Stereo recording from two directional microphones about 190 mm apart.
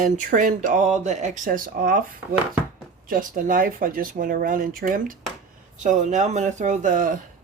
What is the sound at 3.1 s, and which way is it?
Speech, 45° right (ahead or behind).